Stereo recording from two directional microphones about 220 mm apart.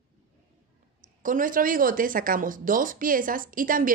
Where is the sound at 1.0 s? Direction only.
35° right (ahead or behind).